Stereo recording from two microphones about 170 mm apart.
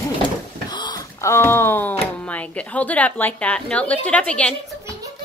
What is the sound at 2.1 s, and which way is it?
A woman's voice, 10° left (ahead or behind).